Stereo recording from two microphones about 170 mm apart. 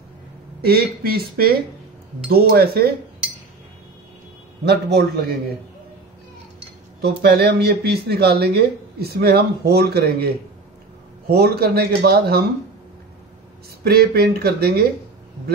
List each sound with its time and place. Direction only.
0.7 s speech: 65° right (ahead or behind)
4.6 s speech: 80° right
7.0 s speech: 65° right (ahead or behind)
13.8 s speech: 65° right (ahead or behind)